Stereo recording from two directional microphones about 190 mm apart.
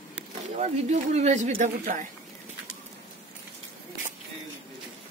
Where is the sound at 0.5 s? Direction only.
35° right (ahead or behind).